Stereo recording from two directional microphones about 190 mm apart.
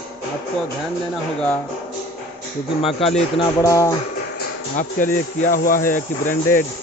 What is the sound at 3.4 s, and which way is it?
Speech, 15° left (ahead or behind).